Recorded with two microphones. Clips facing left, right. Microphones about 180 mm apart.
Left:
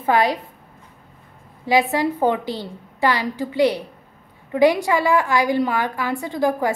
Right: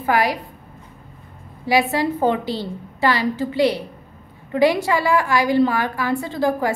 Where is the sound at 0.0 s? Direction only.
20° left (ahead or behind).